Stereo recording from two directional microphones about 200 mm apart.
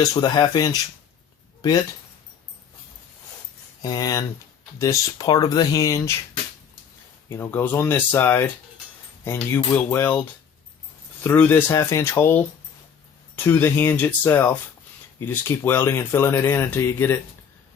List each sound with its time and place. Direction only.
0.0 s speech: 20° left (ahead or behind)
3.8 s speech: 20° left (ahead or behind)
7.3 s speech: 10° left (ahead or behind)